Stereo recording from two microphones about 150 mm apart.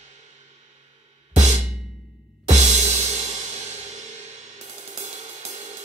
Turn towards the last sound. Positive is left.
turn(degrees=-50)  # may be behind; listen again after turning